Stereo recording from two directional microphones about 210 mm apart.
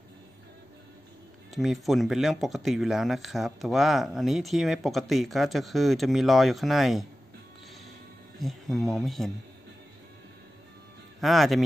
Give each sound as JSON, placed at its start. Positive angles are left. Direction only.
{"t": 1.5, "sound": "speech", "side_deg": 0}
{"t": 8.4, "sound": "speech", "side_deg": 0}
{"t": 11.1, "sound": "speech", "side_deg": 0}